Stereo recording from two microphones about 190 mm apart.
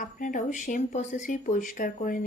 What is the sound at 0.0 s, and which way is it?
A woman's voice, 45° left (ahead or behind).